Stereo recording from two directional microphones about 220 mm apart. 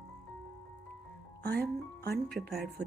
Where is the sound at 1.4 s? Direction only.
45° right (ahead or behind).